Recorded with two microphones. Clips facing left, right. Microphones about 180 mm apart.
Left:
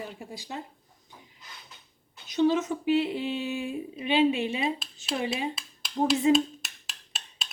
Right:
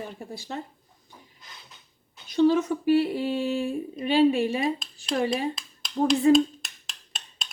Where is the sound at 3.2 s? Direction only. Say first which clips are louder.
Right 4 dB; 45° right (ahead or behind).